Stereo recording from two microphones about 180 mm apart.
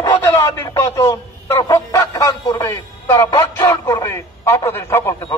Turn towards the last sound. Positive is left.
turn(degrees=15)  # may be behind; listen again after turning